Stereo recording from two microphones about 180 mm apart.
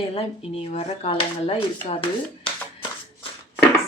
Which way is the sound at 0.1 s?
35° left (ahead or behind).